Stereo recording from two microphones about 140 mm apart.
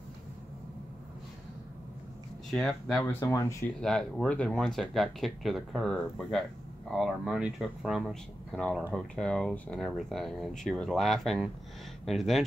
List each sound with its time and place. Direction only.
2.5 s speech: centre (ahead or behind)
3.1 s speech: 20° left (ahead or behind)
3.8 s speech: 5° left (ahead or behind)